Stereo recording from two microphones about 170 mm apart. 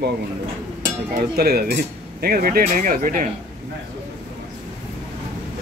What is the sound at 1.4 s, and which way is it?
Speech, 65° right (ahead or behind).